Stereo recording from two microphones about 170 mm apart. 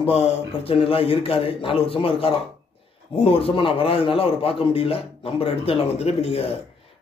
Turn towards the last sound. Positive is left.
turn(degrees=35)  # may be behind; listen again after turning